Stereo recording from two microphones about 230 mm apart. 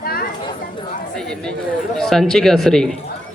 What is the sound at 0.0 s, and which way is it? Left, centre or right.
Chatter, left.